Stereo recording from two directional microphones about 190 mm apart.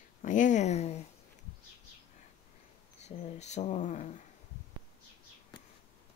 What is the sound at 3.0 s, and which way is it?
Speech, 35° left (ahead or behind).